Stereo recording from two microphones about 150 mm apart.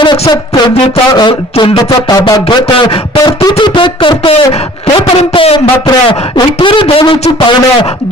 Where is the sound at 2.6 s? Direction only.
40° left (ahead or behind).